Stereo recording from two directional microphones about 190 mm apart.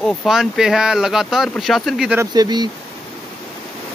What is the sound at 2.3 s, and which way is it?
Speech, 20° right (ahead or behind).